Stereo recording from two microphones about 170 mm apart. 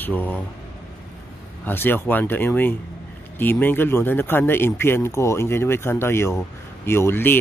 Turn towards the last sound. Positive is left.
turn(degrees=15)  # may be behind; listen again after turning